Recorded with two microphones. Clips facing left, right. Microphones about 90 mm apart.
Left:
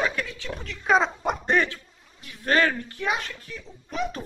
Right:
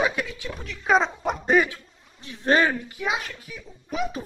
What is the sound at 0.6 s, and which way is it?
Speech, centre (ahead or behind).